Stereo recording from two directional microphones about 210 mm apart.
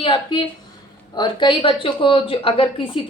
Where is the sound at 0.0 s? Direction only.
25° left (ahead or behind).